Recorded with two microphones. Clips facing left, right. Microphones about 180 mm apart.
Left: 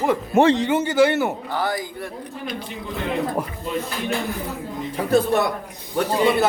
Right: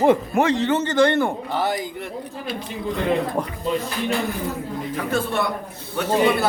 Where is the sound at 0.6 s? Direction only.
10° left (ahead or behind).